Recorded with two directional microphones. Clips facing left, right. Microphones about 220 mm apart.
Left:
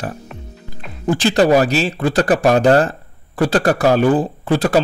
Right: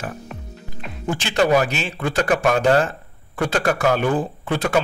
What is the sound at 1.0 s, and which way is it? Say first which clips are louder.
Speech: left 6 dB; 35° left (ahead or behind).